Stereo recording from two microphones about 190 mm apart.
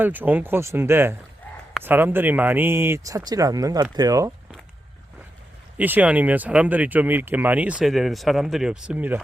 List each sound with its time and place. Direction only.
0.0 s speech: 10° right (ahead or behind)
5.7 s speech: 10° right (ahead or behind)